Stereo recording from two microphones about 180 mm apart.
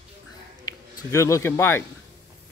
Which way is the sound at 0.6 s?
15° left (ahead or behind).